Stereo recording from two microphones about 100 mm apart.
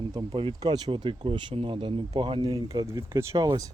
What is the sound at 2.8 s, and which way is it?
Speech, 30° right (ahead or behind).